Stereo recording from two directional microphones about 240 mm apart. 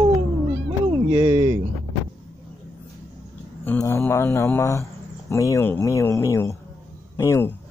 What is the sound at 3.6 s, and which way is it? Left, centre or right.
Speech, centre.